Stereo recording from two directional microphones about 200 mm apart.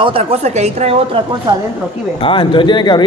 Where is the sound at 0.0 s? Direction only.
30° right (ahead or behind).